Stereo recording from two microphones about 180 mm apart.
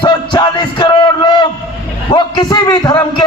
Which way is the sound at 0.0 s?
25° left (ahead or behind).